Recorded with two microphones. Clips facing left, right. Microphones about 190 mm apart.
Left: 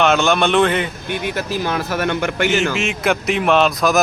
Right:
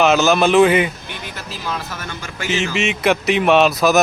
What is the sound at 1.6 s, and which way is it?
Speech, 65° left (ahead or behind).